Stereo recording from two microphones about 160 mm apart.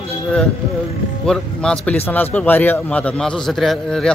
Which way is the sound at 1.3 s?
5° left (ahead or behind).